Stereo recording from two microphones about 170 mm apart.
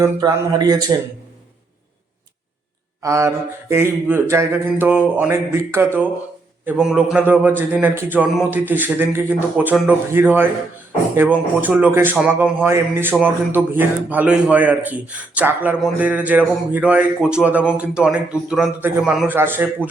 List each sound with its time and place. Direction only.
0.0 s speech: 20° right (ahead or behind)
3.0 s speech: 20° right (ahead or behind)